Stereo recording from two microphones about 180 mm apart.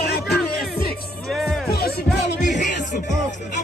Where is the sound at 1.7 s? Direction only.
60° left (ahead or behind).